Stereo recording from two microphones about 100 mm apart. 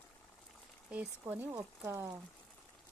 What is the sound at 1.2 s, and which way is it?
Speech, 25° right (ahead or behind).